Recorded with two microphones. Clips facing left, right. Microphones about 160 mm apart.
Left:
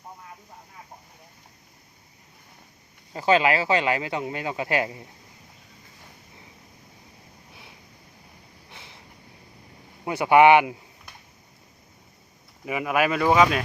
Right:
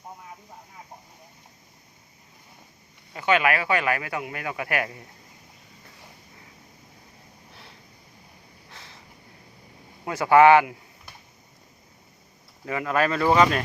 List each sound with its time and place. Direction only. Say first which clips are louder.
3.1 s speech: left 2 dB; 30° left (ahead or behind)
7.5 s a sound: even; 10° left (ahead or behind)
10.1 s speech: even; 20° left (ahead or behind)
12.6 s speech: left 1 dB; 15° left (ahead or behind)